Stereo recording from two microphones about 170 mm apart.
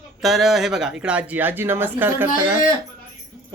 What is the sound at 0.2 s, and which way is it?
A man's voice, centre (ahead or behind).